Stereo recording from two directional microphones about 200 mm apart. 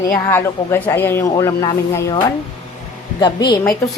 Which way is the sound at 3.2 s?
20° left (ahead or behind).